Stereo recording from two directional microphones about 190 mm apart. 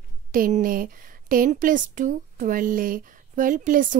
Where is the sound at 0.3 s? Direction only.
45° right (ahead or behind).